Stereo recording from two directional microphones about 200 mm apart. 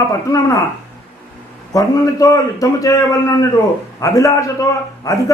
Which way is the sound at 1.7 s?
15° left (ahead or behind).